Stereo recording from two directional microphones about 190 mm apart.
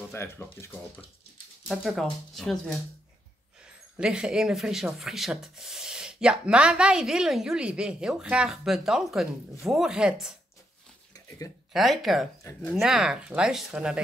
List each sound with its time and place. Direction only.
0.1 s speech: 15° left (ahead or behind)
1.7 s speech: centre (ahead or behind)
3.9 s speech: 5° right (ahead or behind)
11.1 s a sound: 20° left (ahead or behind)
11.7 s speech: centre (ahead or behind)